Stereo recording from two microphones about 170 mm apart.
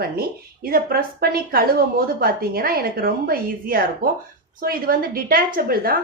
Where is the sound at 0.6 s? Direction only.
60° right (ahead or behind).